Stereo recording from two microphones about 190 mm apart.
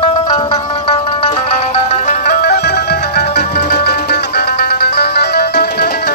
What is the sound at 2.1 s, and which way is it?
Music, 45° left (ahead or behind).